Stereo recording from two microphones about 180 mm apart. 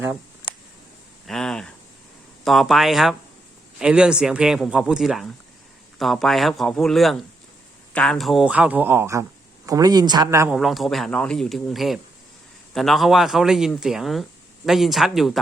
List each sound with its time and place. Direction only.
1.3 s a sound: 5° left (ahead or behind)
2.4 s speech: centre (ahead or behind); by 10.5 s 20° right (ahead or behind)
10.5 s speech: centre (ahead or behind)